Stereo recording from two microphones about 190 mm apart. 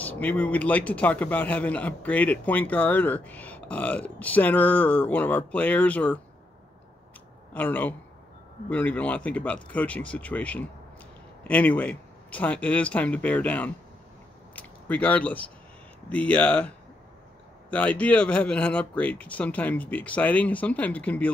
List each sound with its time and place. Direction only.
0.0 s a man's voice: 10° left (ahead or behind)
7.5 s a man's voice: 10° left (ahead or behind)
14.5 s a sound: 10° left (ahead or behind)
16.1 s a man's voice: 5° left (ahead or behind)